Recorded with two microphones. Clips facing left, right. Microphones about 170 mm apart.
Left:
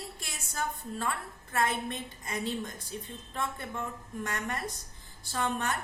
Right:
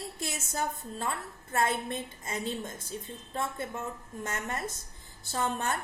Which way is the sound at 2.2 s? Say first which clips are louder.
Left 2 dB; 25° right (ahead or behind).